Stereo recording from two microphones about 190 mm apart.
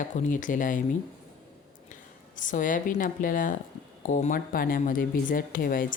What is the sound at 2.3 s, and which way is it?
Speech, 45° left (ahead or behind).